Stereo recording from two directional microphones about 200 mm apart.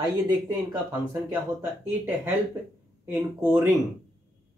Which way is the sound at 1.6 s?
10° right (ahead or behind).